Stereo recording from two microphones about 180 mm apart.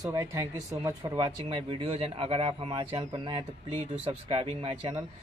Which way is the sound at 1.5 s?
30° right (ahead or behind).